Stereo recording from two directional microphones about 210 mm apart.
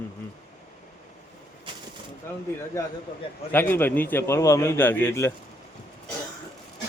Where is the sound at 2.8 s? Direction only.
15° left (ahead or behind).